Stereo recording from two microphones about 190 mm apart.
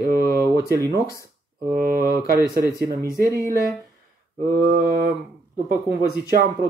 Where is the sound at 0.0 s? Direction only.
55° right (ahead or behind).